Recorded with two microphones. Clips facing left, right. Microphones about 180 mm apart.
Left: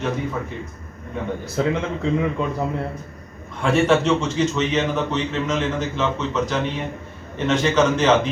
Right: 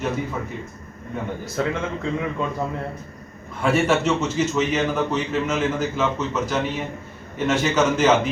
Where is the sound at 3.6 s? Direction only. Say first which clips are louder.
Left 2 dB; 5° right (ahead or behind).